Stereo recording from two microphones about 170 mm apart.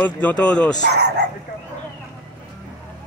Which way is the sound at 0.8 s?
80° right.